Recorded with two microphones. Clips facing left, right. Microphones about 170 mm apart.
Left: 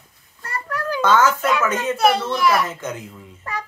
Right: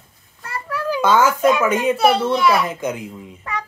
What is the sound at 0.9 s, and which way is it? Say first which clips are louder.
A child's voice: right 1 dB; 10° right (ahead or behind).